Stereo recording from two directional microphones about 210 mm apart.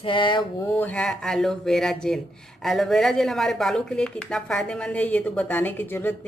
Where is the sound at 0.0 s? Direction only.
25° left (ahead or behind).